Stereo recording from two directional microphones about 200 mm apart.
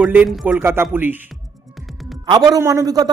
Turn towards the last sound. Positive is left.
turn(degrees=-20)  # may be behind; listen again after turning